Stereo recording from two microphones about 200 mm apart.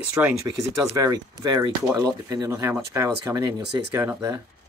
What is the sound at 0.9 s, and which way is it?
Speech, 15° right (ahead or behind).